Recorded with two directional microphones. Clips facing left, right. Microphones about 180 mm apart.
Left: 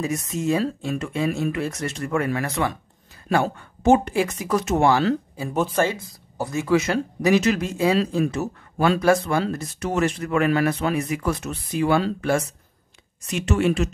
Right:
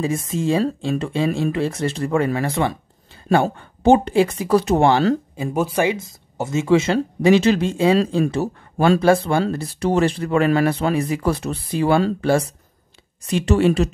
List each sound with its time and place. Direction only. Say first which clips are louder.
0.0 s speech: right 3 dB; 30° right (ahead or behind)
5.5 s speech: right 2 dB; 10° right (ahead or behind); by 13.9 s 35° right (ahead or behind)